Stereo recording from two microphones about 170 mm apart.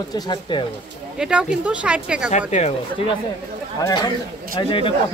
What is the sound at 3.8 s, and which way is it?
Speech, 25° left (ahead or behind).